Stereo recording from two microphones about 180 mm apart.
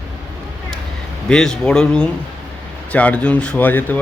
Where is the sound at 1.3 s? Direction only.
5° left (ahead or behind).